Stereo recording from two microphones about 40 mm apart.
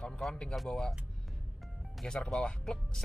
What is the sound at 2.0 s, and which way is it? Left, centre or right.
Speech, centre.